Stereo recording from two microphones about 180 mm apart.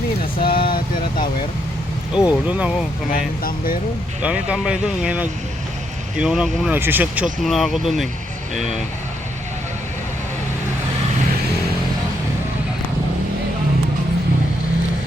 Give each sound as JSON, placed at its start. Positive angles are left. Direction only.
{"t": 0.4, "sound": "vehicle", "side_deg": 55}
{"t": 2.1, "sound": "speech", "side_deg": -5}
{"t": 3.1, "sound": "speech", "side_deg": 50}
{"t": 4.2, "sound": "speech", "side_deg": -5}